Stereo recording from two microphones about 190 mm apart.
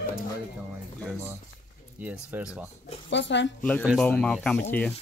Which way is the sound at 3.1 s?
70° left (ahead or behind).